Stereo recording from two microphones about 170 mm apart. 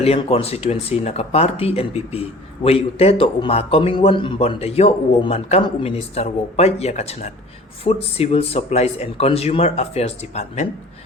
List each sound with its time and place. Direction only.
0.0 s a man's voice: 35° left (ahead or behind)